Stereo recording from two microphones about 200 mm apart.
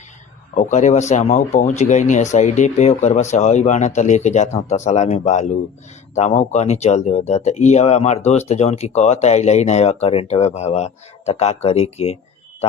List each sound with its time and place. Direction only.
0.5 s speech: 35° left (ahead or behind)